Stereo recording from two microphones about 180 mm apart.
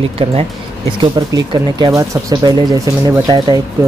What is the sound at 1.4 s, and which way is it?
Speech, 25° right (ahead or behind).